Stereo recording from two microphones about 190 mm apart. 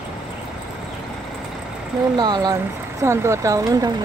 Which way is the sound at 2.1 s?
20° right (ahead or behind).